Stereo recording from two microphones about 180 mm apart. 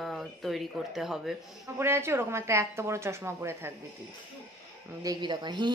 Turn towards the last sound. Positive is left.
turn(degrees=-25)  # may be behind; listen again after turning